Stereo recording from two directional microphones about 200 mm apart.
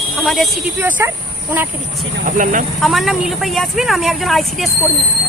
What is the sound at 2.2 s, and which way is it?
Speech, 40° right (ahead or behind).